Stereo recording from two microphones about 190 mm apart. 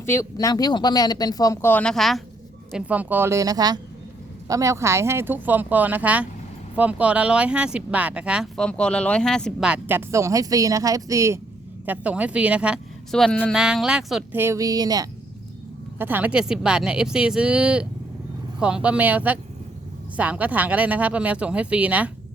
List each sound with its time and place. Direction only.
0.0 s speech: 15° left (ahead or behind); by 22.1 s 5° right (ahead or behind)